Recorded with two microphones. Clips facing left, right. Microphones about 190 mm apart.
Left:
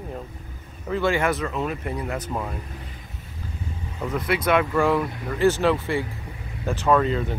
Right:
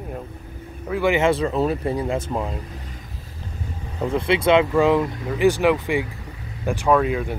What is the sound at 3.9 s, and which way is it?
Speech, 30° right (ahead or behind).